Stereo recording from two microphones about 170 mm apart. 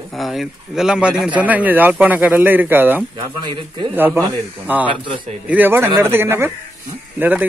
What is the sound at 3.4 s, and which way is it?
Speech, 30° right (ahead or behind).